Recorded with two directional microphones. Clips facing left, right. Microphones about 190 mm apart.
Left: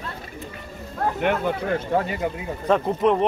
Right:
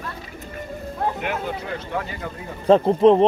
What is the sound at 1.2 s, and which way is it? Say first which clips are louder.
Speech: left 5 dB; 55° left (ahead or behind).